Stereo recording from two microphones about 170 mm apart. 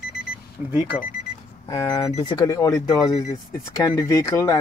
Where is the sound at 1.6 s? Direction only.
20° left (ahead or behind).